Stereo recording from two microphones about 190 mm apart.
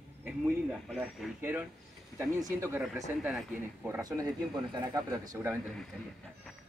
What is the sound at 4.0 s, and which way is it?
Speech, 20° right (ahead or behind).